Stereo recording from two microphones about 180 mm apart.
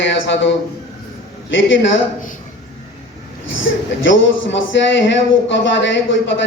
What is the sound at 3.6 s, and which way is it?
A man's voice, 90° left.